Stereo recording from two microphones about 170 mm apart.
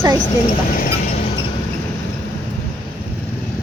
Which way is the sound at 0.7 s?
55° left (ahead or behind).